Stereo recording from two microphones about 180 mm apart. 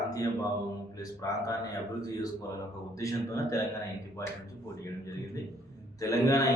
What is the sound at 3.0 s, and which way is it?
Speech, 15° left (ahead or behind).